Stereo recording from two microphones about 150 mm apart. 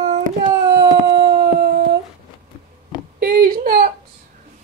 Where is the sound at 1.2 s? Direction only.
90° right.